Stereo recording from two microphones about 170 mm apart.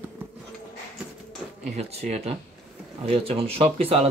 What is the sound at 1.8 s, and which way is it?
A man's voice, 40° right (ahead or behind).